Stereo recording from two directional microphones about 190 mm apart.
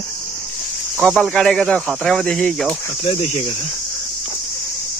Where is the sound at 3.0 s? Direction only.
35° left (ahead or behind).